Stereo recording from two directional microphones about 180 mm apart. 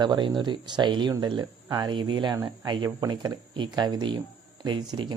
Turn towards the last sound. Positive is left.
turn(degrees=-25)  # may be behind; listen again after turning